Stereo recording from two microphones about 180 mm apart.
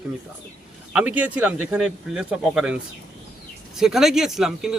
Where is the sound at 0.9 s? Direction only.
5° right (ahead or behind).